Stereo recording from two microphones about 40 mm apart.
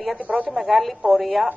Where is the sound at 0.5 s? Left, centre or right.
Centre.